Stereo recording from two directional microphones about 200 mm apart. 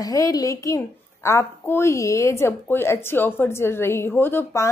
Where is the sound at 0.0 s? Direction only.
20° left (ahead or behind).